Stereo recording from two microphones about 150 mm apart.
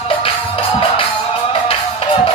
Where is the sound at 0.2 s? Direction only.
40° left (ahead or behind).